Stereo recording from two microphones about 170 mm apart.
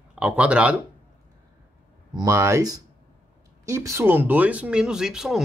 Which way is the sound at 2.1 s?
20° right (ahead or behind).